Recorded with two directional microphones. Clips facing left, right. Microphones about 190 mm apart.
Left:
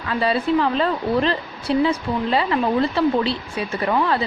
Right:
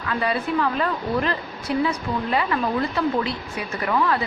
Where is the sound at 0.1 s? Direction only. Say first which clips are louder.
Left 4 dB; 30° left (ahead or behind).